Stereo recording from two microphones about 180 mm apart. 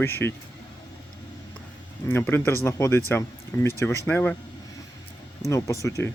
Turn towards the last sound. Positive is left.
turn(degrees=15)  # may be behind; listen again after turning